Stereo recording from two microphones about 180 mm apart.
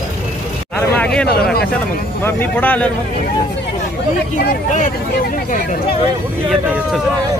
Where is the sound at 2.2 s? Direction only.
10° left (ahead or behind).